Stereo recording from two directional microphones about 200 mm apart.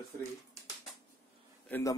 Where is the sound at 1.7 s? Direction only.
15° left (ahead or behind).